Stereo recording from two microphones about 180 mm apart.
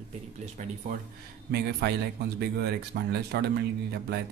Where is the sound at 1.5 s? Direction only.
65° right (ahead or behind).